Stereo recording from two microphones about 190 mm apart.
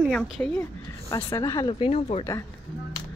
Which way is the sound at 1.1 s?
15° left (ahead or behind).